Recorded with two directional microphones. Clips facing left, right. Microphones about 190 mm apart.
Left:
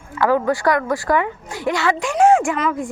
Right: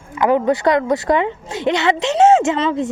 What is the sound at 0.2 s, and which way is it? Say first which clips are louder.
Speech: right 2 dB; 20° right (ahead or behind).